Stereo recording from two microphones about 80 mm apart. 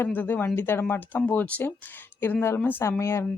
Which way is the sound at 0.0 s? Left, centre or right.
Left.